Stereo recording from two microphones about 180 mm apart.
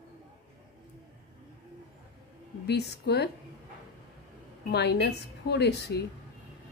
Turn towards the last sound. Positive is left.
turn(degrees=65)  # may be behind; listen again after turning